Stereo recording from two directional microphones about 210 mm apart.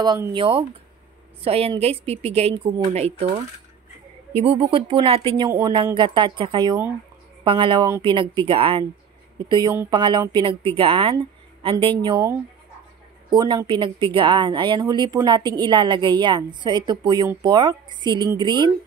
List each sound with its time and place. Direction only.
0.0 s speech: 20° right (ahead or behind)
13.3 s speech: 20° right (ahead or behind)